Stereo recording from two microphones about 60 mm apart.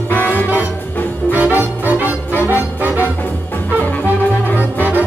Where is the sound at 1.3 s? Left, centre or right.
Right.